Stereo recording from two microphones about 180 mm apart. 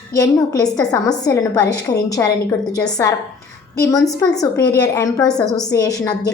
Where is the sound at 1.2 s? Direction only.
20° left (ahead or behind).